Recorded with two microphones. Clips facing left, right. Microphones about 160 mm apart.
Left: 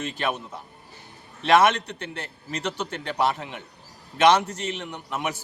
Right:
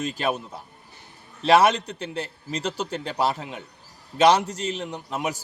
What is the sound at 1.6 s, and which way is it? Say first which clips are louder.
A man's voice: right 1 dB; 35° right (ahead or behind).